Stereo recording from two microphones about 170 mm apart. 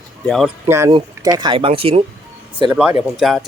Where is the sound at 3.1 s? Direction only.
Centre (ahead or behind).